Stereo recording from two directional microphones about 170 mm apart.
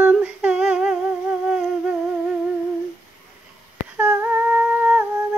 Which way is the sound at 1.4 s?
5° right (ahead or behind).